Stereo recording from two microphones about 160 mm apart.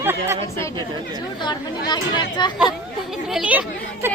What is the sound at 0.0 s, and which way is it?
Speech, 15° right (ahead or behind).